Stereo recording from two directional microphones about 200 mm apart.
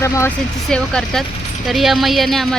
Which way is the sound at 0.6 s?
5° left (ahead or behind).